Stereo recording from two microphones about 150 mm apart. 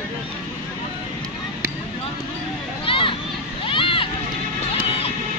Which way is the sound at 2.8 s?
35° left (ahead or behind).